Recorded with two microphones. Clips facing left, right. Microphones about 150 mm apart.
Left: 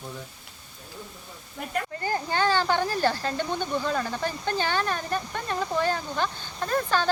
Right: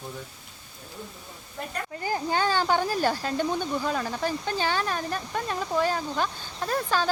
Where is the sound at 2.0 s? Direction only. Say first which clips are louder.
Right 1 dB; 10° right (ahead or behind).